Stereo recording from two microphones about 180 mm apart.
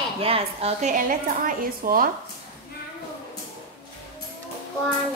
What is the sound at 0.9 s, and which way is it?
A woman's voice, 50° right (ahead or behind).